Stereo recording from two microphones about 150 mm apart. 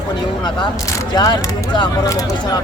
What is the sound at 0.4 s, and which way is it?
Speech, 30° left (ahead or behind).